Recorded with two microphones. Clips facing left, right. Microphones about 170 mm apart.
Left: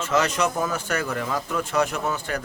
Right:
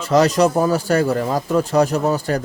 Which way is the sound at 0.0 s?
35° right (ahead or behind).